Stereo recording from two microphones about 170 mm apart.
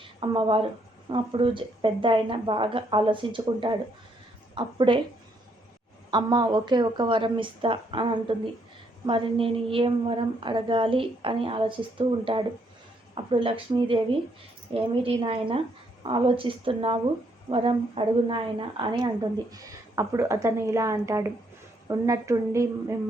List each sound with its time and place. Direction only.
0.0 s a woman's voice: 30° right (ahead or behind)
6.1 s a woman's voice: 25° right (ahead or behind)